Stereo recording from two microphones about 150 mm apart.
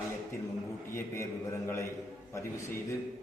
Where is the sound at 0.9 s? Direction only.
20° left (ahead or behind).